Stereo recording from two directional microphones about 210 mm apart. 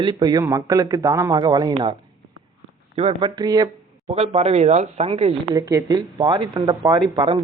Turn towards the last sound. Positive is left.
turn(degrees=-25)  # may be behind; listen again after turning